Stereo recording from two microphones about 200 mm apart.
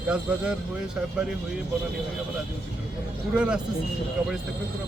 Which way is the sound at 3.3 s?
5° right (ahead or behind).